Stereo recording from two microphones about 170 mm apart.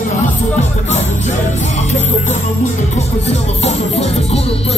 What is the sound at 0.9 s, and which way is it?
Music, 40° left (ahead or behind).